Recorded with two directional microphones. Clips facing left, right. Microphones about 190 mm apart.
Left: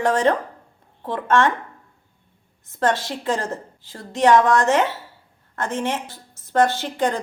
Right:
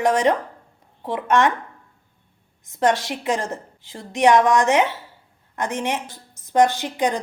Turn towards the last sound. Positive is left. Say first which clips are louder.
# even
turn(degrees=-15)  # may be behind; listen again after turning